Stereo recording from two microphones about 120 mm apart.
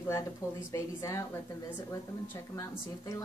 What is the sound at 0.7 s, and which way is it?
Speech, 25° left (ahead or behind).